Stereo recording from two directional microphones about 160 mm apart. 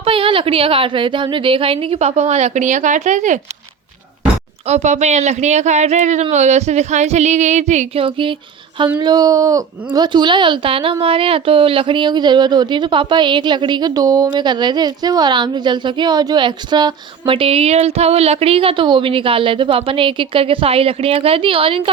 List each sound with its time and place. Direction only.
0.0 s speech: 35° right (ahead or behind); by 3.4 s 50° right (ahead or behind)
4.6 s a sound: 45° right (ahead or behind)
9.0 s speech: 25° right (ahead or behind)